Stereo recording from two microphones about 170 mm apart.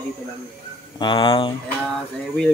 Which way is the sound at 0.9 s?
30° left (ahead or behind).